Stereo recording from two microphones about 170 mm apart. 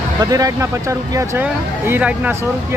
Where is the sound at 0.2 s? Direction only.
20° right (ahead or behind).